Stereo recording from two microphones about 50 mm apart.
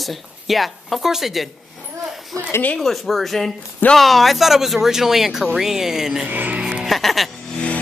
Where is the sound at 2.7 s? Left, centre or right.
Centre.